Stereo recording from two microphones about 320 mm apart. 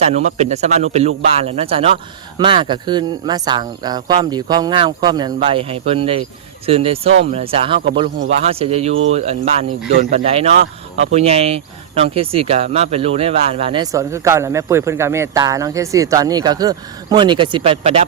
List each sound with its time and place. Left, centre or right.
0.3 s speech: right